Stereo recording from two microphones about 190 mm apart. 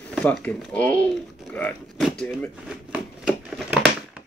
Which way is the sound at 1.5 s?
5° left (ahead or behind).